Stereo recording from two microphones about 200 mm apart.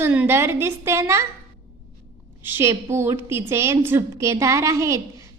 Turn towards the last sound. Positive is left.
turn(degrees=-15)  # may be behind; listen again after turning